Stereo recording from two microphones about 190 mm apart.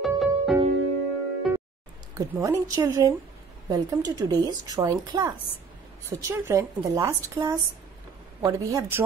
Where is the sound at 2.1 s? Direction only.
15° right (ahead or behind).